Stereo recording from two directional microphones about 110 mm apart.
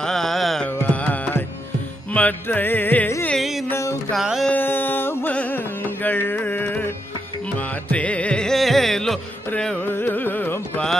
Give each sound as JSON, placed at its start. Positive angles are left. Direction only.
{"t": 0.0, "sound": "music", "side_deg": 5}
{"t": 0.7, "sound": "music", "side_deg": 15}
{"t": 3.3, "sound": "carnatic music", "side_deg": 0}
{"t": 3.7, "sound": "music", "side_deg": 25}
{"t": 4.1, "sound": "music", "side_deg": 0}
{"t": 4.5, "sound": "carnatic music", "side_deg": 20}
{"t": 7.5, "sound": "music", "side_deg": 10}
{"t": 9.8, "sound": "carnatic music", "side_deg": 15}